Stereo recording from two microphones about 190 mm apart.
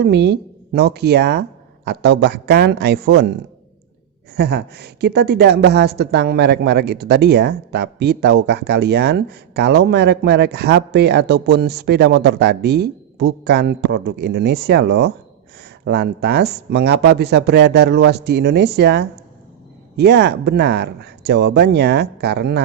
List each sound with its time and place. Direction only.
0.0 s speech: 60° right (ahead or behind)
4.4 s speech: 60° right (ahead or behind)